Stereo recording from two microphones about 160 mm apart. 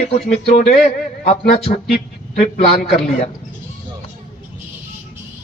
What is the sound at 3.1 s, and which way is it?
Speech, 45° left (ahead or behind).